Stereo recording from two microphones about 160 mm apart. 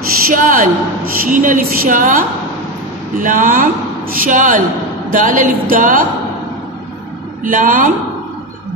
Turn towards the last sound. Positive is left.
turn(degrees=-55)  # may be behind; listen again after turning